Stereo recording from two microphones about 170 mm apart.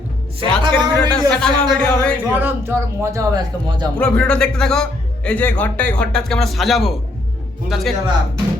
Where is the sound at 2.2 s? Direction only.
10° right (ahead or behind).